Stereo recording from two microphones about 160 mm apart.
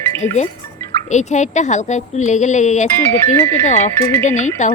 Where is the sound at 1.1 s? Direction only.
45° left (ahead or behind).